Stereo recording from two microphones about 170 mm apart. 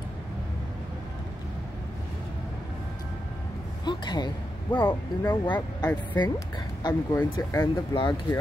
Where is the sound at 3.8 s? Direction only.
25° left (ahead or behind).